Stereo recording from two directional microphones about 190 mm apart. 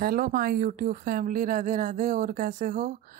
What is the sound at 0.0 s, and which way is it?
Speech, 50° right (ahead or behind).